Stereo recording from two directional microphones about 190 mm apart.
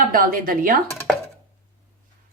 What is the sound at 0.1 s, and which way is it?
Speech, 45° right (ahead or behind).